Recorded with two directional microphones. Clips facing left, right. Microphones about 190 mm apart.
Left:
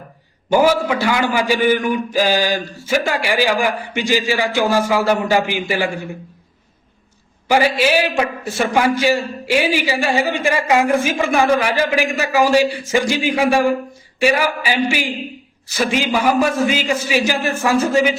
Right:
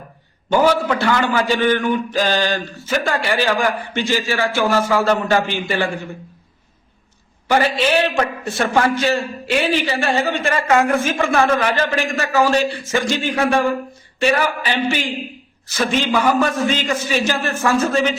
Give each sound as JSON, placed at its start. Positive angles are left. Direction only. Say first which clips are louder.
{"t": 0.5, "sound": "a man's voice", "louder": "left 1 dB", "side_deg": 10}
{"t": 7.4, "sound": "a man's voice", "louder": "left 2 dB", "side_deg": 10}